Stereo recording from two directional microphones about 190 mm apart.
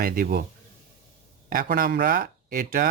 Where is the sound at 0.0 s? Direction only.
50° right (ahead or behind).